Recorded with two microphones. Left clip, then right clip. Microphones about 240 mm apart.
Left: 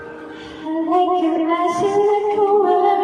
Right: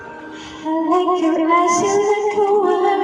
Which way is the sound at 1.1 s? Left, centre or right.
Right.